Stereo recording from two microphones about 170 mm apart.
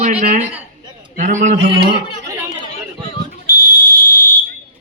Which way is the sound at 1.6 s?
30° right (ahead or behind).